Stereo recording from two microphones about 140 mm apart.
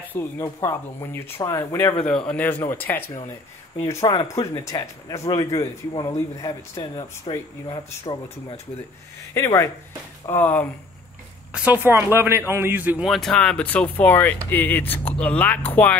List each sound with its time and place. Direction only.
0.1 s speech: 15° left (ahead or behind)
9.3 s speech: 20° left (ahead or behind)
11.5 s speech: 10° right (ahead or behind); by 16.0 s 10° left (ahead or behind)